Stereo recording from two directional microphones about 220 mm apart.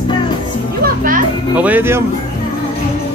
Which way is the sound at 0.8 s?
40° right (ahead or behind).